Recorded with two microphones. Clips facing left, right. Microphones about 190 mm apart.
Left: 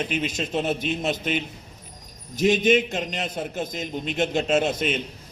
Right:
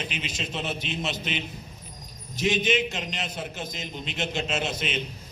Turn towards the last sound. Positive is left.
turn(degrees=50)  # may be behind; listen again after turning